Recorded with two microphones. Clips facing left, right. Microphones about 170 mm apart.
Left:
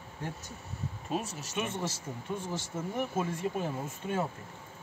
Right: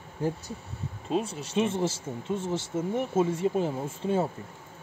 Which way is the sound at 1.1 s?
30° right (ahead or behind).